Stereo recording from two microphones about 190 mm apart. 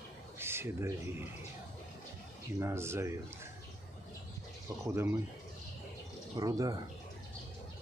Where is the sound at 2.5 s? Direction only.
15° right (ahead or behind).